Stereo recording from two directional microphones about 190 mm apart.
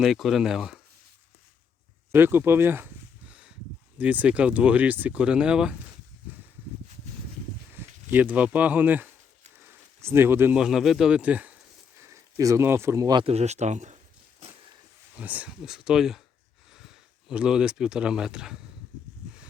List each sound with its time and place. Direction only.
0.0 s speech: centre (ahead or behind)
2.1 s a sound: 10° right (ahead or behind)
3.9 s speech: 10° right (ahead or behind)
7.8 s a sound: 10° right (ahead or behind)
8.1 s speech: 10° right (ahead or behind); by 14.0 s 40° right (ahead or behind)
15.1 s speech: 10° right (ahead or behind)